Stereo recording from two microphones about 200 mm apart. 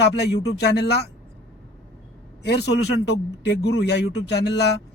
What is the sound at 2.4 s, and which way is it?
Speech, 55° left (ahead or behind).